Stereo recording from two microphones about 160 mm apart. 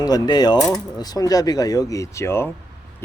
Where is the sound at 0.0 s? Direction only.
25° left (ahead or behind).